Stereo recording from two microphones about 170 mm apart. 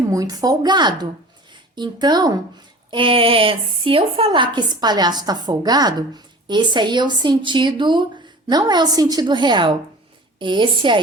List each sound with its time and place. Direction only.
0.1 s a woman's voice: 20° right (ahead or behind)